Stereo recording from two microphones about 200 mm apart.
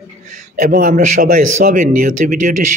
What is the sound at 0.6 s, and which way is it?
A man's voice, 45° right (ahead or behind).